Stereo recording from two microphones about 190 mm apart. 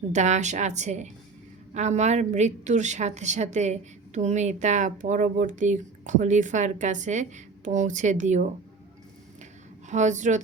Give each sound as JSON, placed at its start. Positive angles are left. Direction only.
{"t": 0.1, "sound": "a woman's voice", "side_deg": -40}
{"t": 9.9, "sound": "a woman's voice", "side_deg": -40}